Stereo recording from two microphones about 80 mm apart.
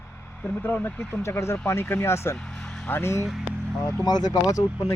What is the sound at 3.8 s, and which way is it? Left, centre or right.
Speech, left.